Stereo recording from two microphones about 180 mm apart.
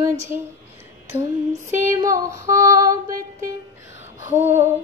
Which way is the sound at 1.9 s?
15° right (ahead or behind).